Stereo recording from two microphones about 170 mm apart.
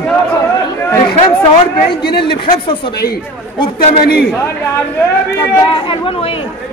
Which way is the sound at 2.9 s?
65° left (ahead or behind).